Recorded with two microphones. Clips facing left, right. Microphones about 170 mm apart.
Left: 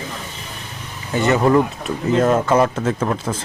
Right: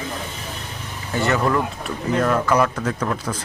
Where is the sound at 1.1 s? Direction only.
20° left (ahead or behind).